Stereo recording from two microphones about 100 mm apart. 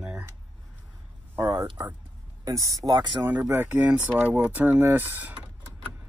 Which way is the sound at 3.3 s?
20° right (ahead or behind).